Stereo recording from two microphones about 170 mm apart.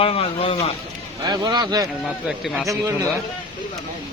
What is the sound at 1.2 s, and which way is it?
Speech, 25° right (ahead or behind).